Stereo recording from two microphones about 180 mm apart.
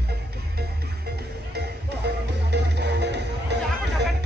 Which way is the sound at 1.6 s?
70° right (ahead or behind).